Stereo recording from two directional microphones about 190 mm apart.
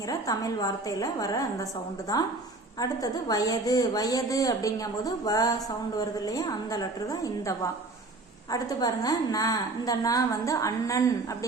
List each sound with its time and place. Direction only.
0.1 s a woman's voice: 20° left (ahead or behind)
2.8 s a woman's voice: 20° left (ahead or behind)